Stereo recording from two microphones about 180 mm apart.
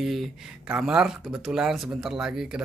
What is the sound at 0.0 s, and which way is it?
Speech, centre (ahead or behind).